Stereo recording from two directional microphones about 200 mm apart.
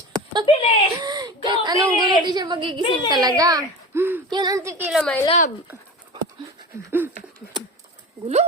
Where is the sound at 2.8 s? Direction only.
25° left (ahead or behind).